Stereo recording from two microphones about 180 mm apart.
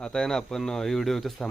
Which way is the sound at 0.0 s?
5° left (ahead or behind).